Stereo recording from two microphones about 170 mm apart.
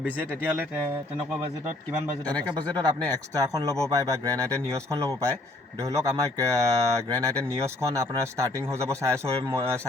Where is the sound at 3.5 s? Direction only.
20° right (ahead or behind).